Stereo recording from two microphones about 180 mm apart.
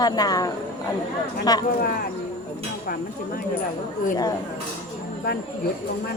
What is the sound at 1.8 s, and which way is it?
Speech, 55° left (ahead or behind).